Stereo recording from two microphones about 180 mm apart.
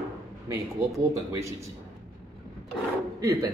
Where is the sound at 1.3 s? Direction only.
15° right (ahead or behind).